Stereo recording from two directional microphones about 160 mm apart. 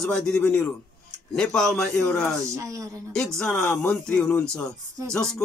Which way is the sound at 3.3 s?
5° left (ahead or behind).